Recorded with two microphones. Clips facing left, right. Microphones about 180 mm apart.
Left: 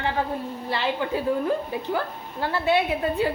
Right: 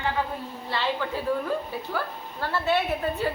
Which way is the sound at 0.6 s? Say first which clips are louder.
Left 2 dB; 15° left (ahead or behind).